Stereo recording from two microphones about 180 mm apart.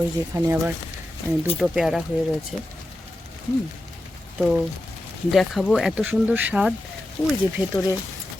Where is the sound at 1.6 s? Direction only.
Centre (ahead or behind).